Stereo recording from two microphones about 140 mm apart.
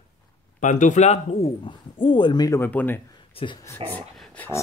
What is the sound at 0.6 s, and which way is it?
Speech, 60° left (ahead or behind).